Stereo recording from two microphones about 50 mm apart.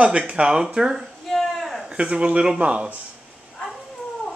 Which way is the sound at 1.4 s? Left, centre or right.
Centre.